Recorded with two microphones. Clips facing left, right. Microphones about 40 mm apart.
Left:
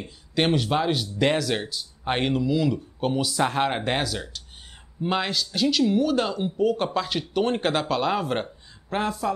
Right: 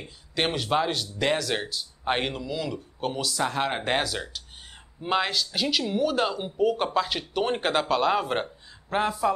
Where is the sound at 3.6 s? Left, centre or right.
Centre.